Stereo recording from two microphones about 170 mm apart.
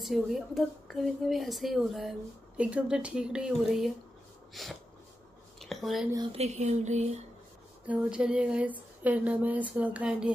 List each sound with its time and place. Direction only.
0.0 s speech: centre (ahead or behind)
5.6 s a sound: centre (ahead or behind)
6.3 s speech: 40° right (ahead or behind)
7.8 s speech: 10° right (ahead or behind)